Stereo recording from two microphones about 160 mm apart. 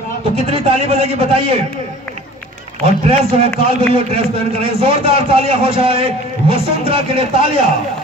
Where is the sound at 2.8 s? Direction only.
35° right (ahead or behind).